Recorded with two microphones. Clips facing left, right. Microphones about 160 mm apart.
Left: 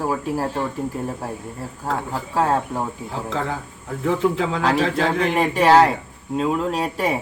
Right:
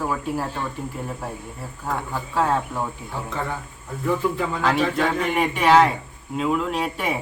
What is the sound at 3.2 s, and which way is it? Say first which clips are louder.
Speech: left 4 dB; 90° left.